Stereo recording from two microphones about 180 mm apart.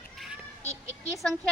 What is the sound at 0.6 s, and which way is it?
Speech, 15° right (ahead or behind).